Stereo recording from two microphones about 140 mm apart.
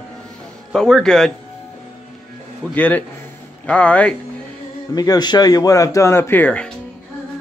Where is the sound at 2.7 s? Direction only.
10° left (ahead or behind).